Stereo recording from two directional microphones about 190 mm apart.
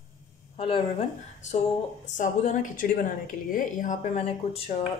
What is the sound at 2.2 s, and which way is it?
A woman's voice, 40° left (ahead or behind).